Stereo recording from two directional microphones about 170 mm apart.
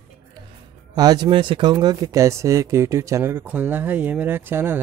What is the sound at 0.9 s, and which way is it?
Speech, 25° right (ahead or behind).